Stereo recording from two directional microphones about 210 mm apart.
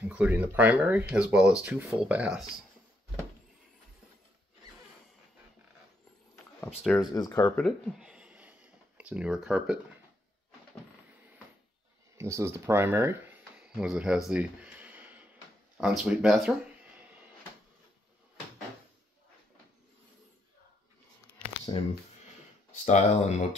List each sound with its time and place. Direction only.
0.0 s speech: 5° right (ahead or behind)
7.0 s speech: 20° left (ahead or behind)
7.6 s a sound: centre (ahead or behind)
12.2 s speech: 15° right (ahead or behind)
21.7 s speech: 20° left (ahead or behind)
22.8 s speech: 35° left (ahead or behind)